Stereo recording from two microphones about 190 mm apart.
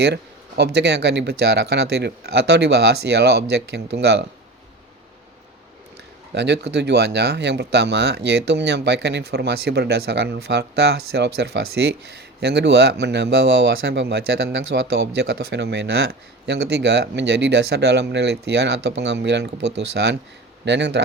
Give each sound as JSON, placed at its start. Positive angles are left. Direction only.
{"t": 0.0, "sound": "speech", "side_deg": -60}
{"t": 6.3, "sound": "speech", "side_deg": -65}